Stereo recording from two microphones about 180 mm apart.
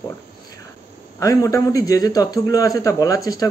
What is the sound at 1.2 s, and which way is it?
A man's voice, 20° left (ahead or behind).